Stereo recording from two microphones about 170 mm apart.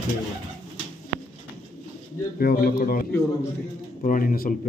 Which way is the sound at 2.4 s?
60° left (ahead or behind).